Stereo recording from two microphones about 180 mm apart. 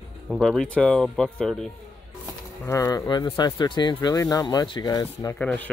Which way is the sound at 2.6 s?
20° left (ahead or behind).